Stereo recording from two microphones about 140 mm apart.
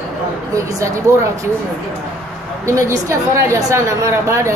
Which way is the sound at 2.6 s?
20° right (ahead or behind).